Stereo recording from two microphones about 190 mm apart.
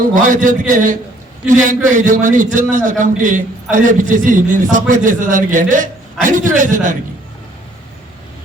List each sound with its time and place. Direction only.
0.1 s a man's voice: 45° right (ahead or behind)